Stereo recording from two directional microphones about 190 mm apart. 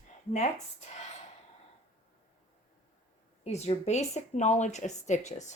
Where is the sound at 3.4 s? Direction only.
35° left (ahead or behind).